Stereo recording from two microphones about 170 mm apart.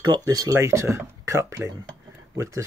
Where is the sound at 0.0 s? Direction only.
25° right (ahead or behind).